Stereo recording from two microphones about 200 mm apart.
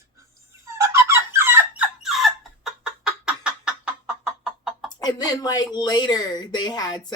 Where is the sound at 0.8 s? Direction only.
15° right (ahead or behind).